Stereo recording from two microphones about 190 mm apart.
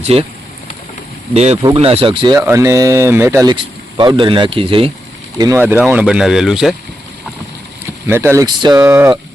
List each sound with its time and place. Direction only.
0.0 s speech: 30° right (ahead or behind)
1.3 s speech: 35° right (ahead or behind)
2.4 s speech: 15° right (ahead or behind)
3.4 s speech: 25° right (ahead or behind)
5.4 s speech: 15° right (ahead or behind)
8.0 s speech: 15° right (ahead or behind)